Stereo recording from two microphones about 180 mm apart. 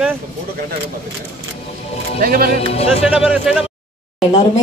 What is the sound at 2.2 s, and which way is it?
Speech, 55° right (ahead or behind).